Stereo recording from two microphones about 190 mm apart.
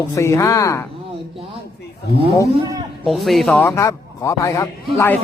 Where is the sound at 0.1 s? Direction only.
15° left (ahead or behind).